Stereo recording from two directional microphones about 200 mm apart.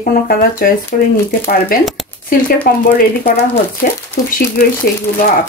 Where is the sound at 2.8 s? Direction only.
45° left (ahead or behind).